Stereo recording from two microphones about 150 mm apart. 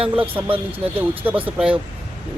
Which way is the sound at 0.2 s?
10° right (ahead or behind).